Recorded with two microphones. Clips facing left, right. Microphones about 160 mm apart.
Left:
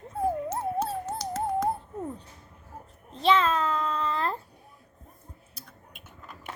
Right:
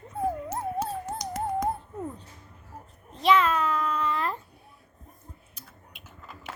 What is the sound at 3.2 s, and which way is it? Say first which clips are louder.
Child singing: right 1 dB; 30° left (ahead or behind).